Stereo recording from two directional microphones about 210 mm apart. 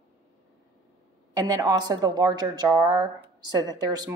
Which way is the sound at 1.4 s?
20° right (ahead or behind).